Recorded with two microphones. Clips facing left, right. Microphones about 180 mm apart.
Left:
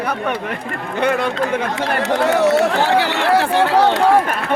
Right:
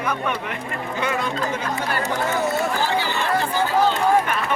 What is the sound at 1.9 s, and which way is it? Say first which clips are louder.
Speech: left 8 dB; 75° left (ahead or behind).